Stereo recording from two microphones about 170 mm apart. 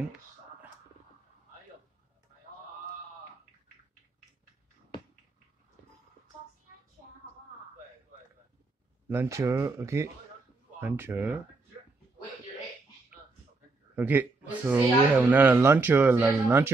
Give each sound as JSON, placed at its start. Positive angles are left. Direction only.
{"t": 9.1, "sound": "speech", "side_deg": -15}
{"t": 13.9, "sound": "speech", "side_deg": -10}